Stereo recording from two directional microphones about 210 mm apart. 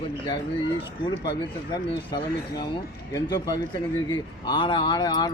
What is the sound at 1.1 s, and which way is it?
A man's voice, 20° left (ahead or behind).